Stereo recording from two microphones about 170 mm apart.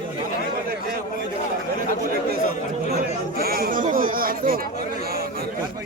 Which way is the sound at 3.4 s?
60° right (ahead or behind).